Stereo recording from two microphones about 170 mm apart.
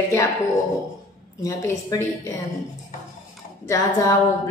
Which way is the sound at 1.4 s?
20° left (ahead or behind).